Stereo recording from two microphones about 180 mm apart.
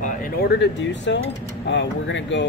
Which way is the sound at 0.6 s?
85° left.